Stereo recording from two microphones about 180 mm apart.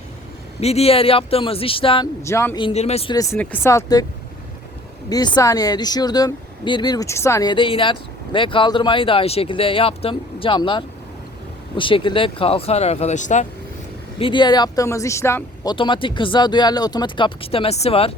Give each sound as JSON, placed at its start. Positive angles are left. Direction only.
{"t": 0.6, "sound": "speech", "side_deg": 35}
{"t": 2.2, "sound": "speech", "side_deg": 15}
{"t": 2.6, "sound": "speech", "side_deg": 30}
{"t": 3.2, "sound": "speech", "side_deg": 10}
{"t": 5.0, "sound": "speech", "side_deg": 25}
{"t": 14.2, "sound": "speech", "side_deg": 25}
{"t": 15.7, "sound": "speech", "side_deg": 30}